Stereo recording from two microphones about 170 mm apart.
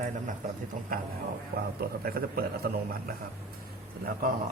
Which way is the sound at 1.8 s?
60° right (ahead or behind).